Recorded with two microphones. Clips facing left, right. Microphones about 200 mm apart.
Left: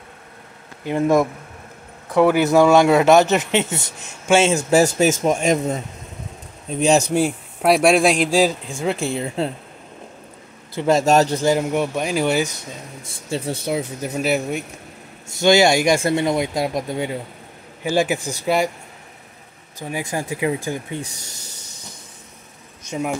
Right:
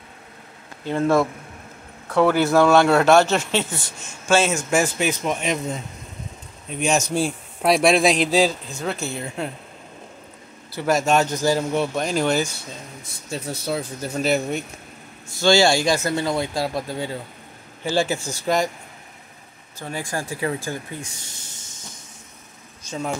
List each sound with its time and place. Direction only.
0.8 s speech: 15° left (ahead or behind)
4.6 s speech: 35° left (ahead or behind)
6.8 s speech: 35° left (ahead or behind)
7.2 s speech: 10° left (ahead or behind)
8.6 s speech: 30° left (ahead or behind)
10.7 s speech: 25° left (ahead or behind)
11.5 s speech: 15° left (ahead or behind)
13.3 s speech: 25° left (ahead or behind)
13.7 s speech: 10° left (ahead or behind)
15.3 s speech: 20° left (ahead or behind)
19.8 s speech: 15° left (ahead or behind)
21.0 s snake: 40° left (ahead or behind)
22.8 s speech: 15° left (ahead or behind)